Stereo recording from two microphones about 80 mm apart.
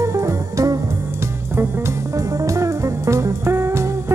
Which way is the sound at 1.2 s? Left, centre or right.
Right.